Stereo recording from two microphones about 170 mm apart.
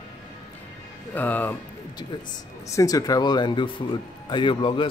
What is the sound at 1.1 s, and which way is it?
Speech, 10° left (ahead or behind).